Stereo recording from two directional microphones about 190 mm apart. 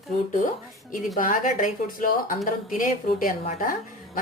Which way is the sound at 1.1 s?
45° left (ahead or behind).